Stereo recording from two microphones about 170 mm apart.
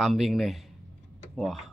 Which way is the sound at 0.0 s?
Centre (ahead or behind).